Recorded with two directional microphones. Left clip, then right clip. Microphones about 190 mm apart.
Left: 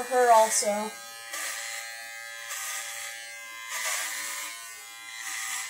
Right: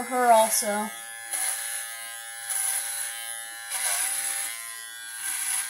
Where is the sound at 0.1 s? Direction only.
Centre (ahead or behind).